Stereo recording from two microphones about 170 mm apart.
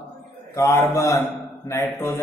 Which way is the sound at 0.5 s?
15° left (ahead or behind).